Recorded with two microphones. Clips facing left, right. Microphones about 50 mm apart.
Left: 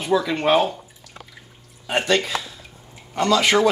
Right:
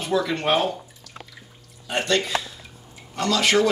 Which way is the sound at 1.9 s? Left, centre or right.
Centre.